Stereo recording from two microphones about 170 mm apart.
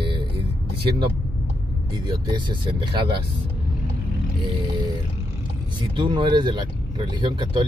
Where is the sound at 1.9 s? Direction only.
25° right (ahead or behind).